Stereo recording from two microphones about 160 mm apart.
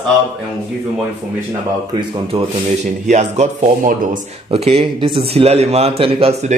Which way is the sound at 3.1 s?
45° right (ahead or behind).